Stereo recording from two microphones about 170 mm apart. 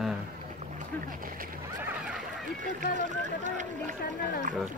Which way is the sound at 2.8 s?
50° right (ahead or behind).